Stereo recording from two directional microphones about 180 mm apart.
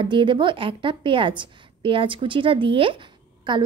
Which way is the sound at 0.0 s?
25° right (ahead or behind).